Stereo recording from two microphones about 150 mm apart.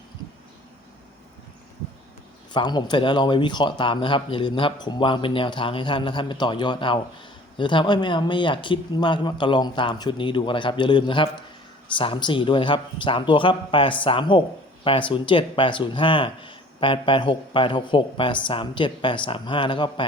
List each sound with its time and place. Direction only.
2.5 s speech: 30° left (ahead or behind)